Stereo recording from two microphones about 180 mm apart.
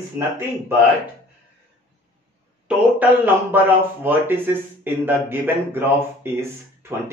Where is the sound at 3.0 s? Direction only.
10° right (ahead or behind).